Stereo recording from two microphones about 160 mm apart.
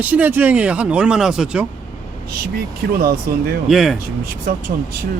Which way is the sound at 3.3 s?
65° right (ahead or behind).